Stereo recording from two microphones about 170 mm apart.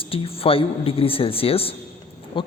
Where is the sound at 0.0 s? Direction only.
35° left (ahead or behind).